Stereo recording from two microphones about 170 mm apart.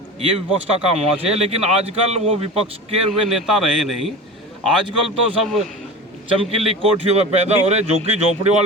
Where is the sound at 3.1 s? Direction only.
Centre (ahead or behind).